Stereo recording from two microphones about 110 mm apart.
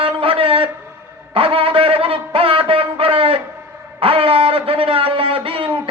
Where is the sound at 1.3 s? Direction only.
55° right (ahead or behind).